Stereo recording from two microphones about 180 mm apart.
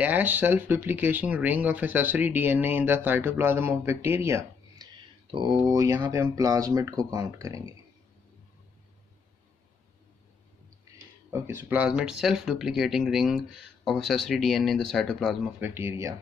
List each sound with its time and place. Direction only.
0.0 s speech: 10° right (ahead or behind)
11.2 s speech: 15° right (ahead or behind); by 15.3 s centre (ahead or behind)
15.6 s speech: 15° right (ahead or behind)